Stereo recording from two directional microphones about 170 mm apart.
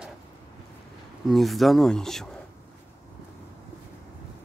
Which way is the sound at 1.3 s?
Centre (ahead or behind).